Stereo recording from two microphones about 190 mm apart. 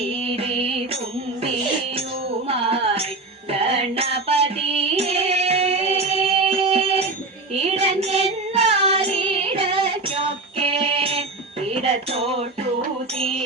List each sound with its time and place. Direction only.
0.0 s music: 30° right (ahead or behind)
2.5 s music: 30° right (ahead or behind)
7.5 s child singing: 35° right (ahead or behind)
11.6 s music: 30° right (ahead or behind)